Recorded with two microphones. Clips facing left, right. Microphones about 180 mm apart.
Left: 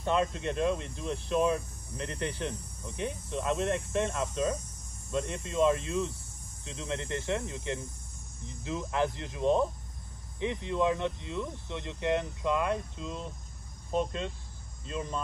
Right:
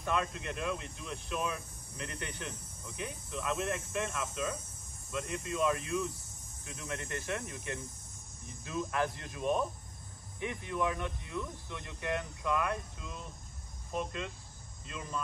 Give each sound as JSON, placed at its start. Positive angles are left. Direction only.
{"t": 0.0, "sound": "speech", "side_deg": 30}